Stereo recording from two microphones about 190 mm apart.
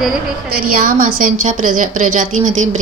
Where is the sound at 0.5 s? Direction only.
50° right (ahead or behind).